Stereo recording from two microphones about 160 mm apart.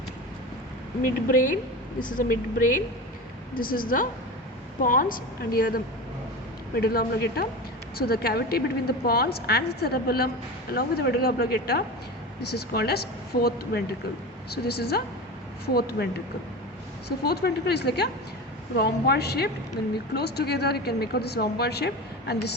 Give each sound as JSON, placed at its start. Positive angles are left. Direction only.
{"t": 1.0, "sound": "a woman's voice", "side_deg": 55}